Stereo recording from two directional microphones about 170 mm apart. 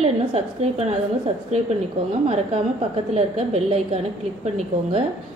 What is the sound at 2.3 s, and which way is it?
A woman's voice, 35° right (ahead or behind).